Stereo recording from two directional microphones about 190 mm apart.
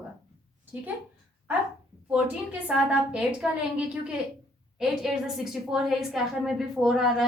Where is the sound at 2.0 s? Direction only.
5° right (ahead or behind).